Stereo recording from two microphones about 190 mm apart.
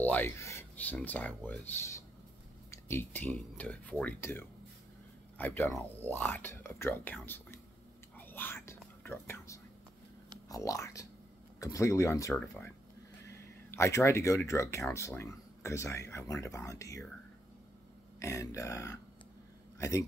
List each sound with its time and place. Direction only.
0.0 s speech: 10° left (ahead or behind)
8.2 s whispering: 10° left (ahead or behind)
10.5 s speech: 15° left (ahead or behind)
18.2 s speech: 15° left (ahead or behind)